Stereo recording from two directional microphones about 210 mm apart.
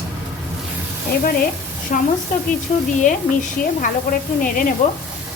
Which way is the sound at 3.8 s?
40° left (ahead or behind).